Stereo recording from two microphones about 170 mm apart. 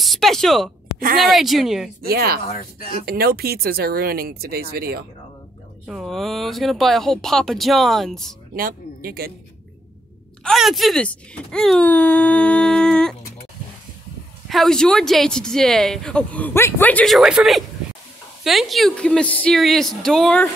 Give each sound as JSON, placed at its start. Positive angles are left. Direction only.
{"t": 0.0, "sound": "speech", "side_deg": 0}
{"t": 2.0, "sound": "speech", "side_deg": -65}
{"t": 5.9, "sound": "speech", "side_deg": 0}
{"t": 8.5, "sound": "speech", "side_deg": -60}
{"t": 10.4, "sound": "speech", "side_deg": 0}
{"t": 14.5, "sound": "speech", "side_deg": 0}